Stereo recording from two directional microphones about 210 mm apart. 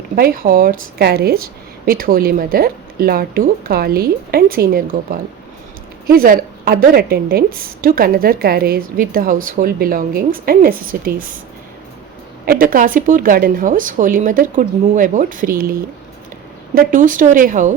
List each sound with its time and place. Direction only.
0.2 s a woman's voice: 45° right (ahead or behind)
6.1 s a woman's voice: 45° right (ahead or behind)
12.5 s a woman's voice: 40° right (ahead or behind)
16.7 s a woman's voice: 40° right (ahead or behind)